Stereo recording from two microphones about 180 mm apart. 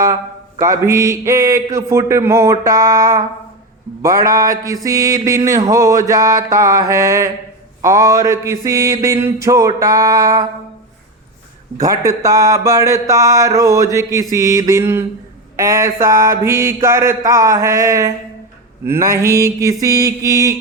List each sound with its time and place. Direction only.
0.6 s mantra: 15° right (ahead or behind)
4.0 s a sound: 20° right (ahead or behind)
7.8 s mantra: 15° right (ahead or behind)
11.8 s mantra: 20° right (ahead or behind)